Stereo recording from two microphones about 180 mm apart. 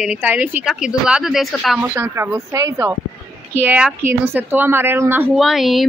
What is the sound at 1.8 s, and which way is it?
A woman's voice, 15° right (ahead or behind).